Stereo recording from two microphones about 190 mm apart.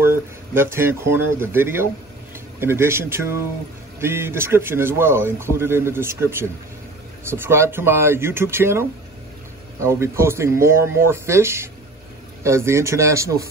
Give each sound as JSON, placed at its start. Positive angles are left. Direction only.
{"t": 0.0, "sound": "speech", "side_deg": -15}